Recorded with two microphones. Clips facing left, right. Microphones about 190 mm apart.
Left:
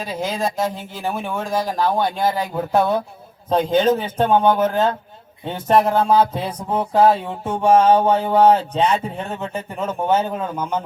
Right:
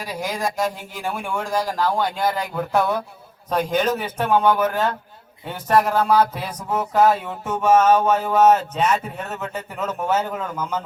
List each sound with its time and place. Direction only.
1.0 s speech: 20° left (ahead or behind)